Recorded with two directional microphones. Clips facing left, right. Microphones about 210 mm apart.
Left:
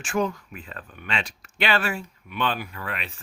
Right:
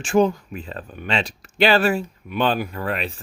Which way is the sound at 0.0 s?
30° right (ahead or behind).